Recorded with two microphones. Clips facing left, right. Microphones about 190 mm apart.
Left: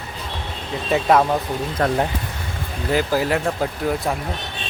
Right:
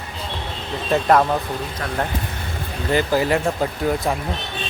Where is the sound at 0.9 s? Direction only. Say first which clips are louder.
Even; centre (ahead or behind).